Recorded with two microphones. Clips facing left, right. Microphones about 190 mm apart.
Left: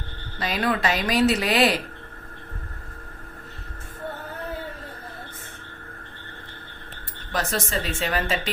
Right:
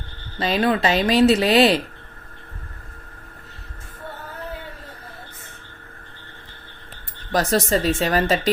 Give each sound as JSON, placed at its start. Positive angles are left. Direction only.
{"t": 0.3, "sound": "speech", "side_deg": -25}
{"t": 7.3, "sound": "speech", "side_deg": -40}